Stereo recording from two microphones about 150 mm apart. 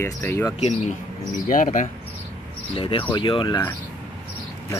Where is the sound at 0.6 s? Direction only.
50° left (ahead or behind).